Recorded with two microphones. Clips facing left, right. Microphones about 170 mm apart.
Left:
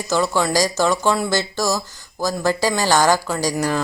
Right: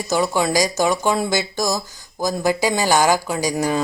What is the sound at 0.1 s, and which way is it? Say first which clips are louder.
Speech: even; 15° right (ahead or behind).